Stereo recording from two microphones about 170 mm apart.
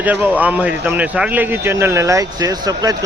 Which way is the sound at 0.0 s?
10° right (ahead or behind).